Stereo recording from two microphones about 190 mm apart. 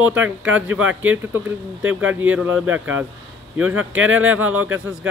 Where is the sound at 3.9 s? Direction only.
90° right.